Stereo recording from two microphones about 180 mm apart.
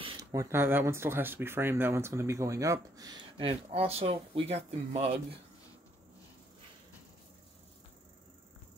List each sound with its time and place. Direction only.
0.0 s speech: 25° right (ahead or behind)